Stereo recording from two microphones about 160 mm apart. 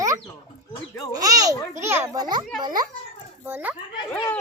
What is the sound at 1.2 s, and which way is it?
A child's voice, 20° right (ahead or behind).